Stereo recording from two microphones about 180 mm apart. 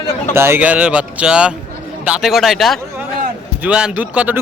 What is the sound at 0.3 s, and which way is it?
A man's voice, 15° right (ahead or behind).